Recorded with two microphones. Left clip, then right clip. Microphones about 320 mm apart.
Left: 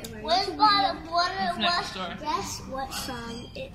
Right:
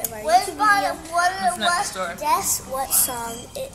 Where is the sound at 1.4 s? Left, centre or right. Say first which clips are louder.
Right 5 dB; centre.